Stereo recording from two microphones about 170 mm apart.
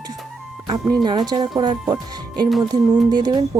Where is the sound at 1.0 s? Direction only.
25° right (ahead or behind).